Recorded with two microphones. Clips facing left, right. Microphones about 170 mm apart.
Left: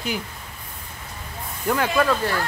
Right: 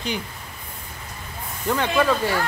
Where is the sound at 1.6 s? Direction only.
5° left (ahead or behind).